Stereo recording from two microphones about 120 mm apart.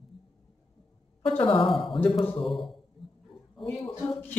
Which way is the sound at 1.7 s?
Centre (ahead or behind).